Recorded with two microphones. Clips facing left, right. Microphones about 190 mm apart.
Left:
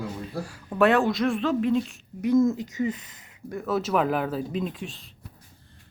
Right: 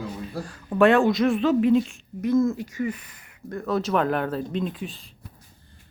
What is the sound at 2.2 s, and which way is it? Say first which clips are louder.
Speech: left 1 dB; 15° left (ahead or behind).